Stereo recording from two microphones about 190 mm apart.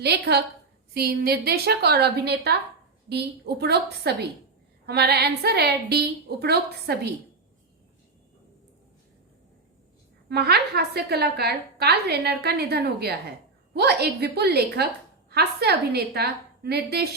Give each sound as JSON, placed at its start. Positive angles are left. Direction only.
{"t": 0.0, "sound": "a woman's voice", "side_deg": -60}
{"t": 10.2, "sound": "a woman's voice", "side_deg": -55}